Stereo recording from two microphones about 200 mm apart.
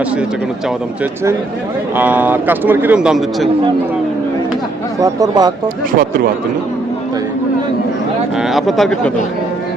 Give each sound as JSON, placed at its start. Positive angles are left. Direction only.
{"t": 2.0, "sound": "a man's voice", "side_deg": -10}
{"t": 4.9, "sound": "speech", "side_deg": -15}
{"t": 8.4, "sound": "speech", "side_deg": 0}